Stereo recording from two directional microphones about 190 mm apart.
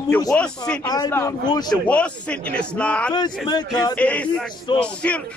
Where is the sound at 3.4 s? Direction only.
20° left (ahead or behind).